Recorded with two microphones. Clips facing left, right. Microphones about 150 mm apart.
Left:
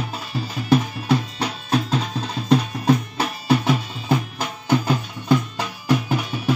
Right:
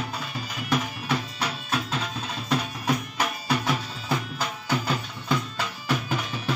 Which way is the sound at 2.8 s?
30° left (ahead or behind).